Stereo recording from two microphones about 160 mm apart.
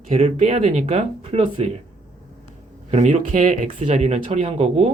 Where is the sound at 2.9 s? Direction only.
45° right (ahead or behind).